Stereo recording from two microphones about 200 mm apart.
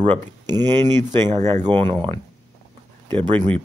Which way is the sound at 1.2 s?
30° right (ahead or behind).